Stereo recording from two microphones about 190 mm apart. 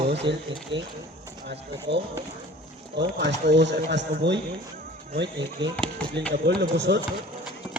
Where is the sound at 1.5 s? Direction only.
65° right (ahead or behind).